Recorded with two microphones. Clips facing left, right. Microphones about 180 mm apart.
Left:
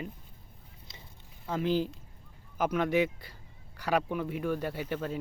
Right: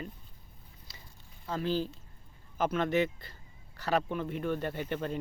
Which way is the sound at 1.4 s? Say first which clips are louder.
Left 3 dB; 15° left (ahead or behind).